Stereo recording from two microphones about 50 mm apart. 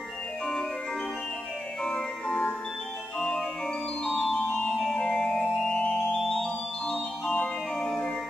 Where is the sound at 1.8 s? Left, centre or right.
Centre.